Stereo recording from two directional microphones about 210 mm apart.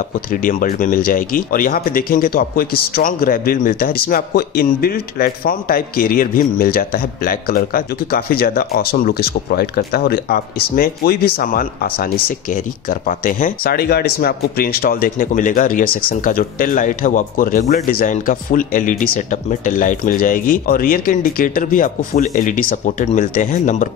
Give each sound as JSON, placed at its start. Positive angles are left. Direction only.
{"t": 0.3, "sound": "speech", "side_deg": 40}